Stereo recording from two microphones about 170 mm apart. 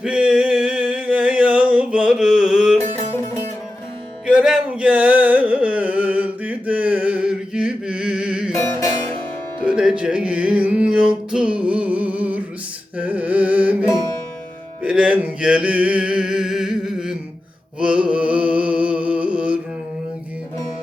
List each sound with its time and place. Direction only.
0.0 s a sound: 5° right (ahead or behind)
4.3 s carnatic music: 5° right (ahead or behind)
8.5 s music: 20° left (ahead or behind)
9.6 s music: 5° right (ahead or behind)
13.0 s carnatic music: 10° right (ahead or behind)
14.8 s a sound: 5° right (ahead or behind)
17.7 s mantra: 5° right (ahead or behind)